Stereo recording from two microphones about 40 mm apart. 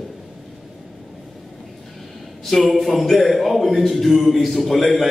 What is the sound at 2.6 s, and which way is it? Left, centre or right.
A man's voice, centre.